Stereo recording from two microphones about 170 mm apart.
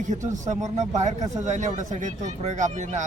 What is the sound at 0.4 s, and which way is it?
Speech, 45° right (ahead or behind).